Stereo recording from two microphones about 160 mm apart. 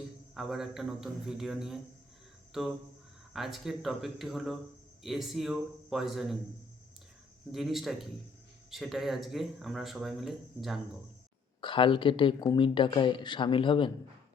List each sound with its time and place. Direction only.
0.3 s speech: centre (ahead or behind)
7.5 s speech: centre (ahead or behind)
11.6 s speech: 30° left (ahead or behind)